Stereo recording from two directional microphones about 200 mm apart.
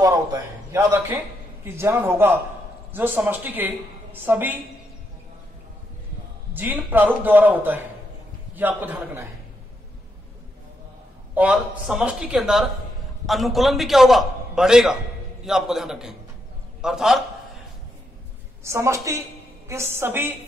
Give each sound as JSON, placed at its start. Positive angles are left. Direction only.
{"t": 0.0, "sound": "a man's voice", "side_deg": -15}
{"t": 6.5, "sound": "a woman's voice", "side_deg": -10}
{"t": 11.3, "sound": "a man's voice", "side_deg": -5}
{"t": 18.6, "sound": "a woman's voice", "side_deg": -15}